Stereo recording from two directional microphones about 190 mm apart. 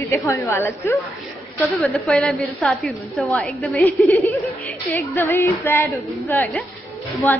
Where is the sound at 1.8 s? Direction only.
Centre (ahead or behind).